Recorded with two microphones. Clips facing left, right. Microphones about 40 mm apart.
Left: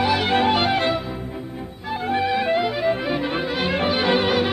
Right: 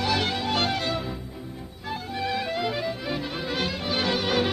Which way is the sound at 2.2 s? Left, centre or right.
Left.